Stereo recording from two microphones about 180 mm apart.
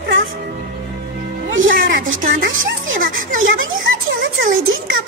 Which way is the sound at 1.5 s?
90° right.